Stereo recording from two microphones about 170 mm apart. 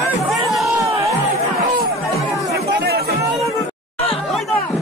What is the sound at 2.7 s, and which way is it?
Chatter, 75° right (ahead or behind).